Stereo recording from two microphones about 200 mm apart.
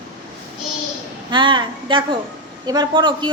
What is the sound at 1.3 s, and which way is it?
A child's voice, 25° right (ahead or behind).